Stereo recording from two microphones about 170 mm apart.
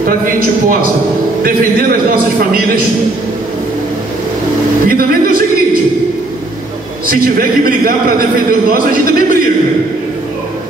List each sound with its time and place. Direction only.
0.0 s a man's voice: 55° right (ahead or behind)
4.8 s a man's voice: 55° right (ahead or behind)
7.1 s a man's voice: 55° right (ahead or behind)